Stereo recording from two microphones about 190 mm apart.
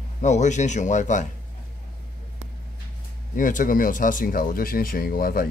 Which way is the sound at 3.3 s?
45° left (ahead or behind).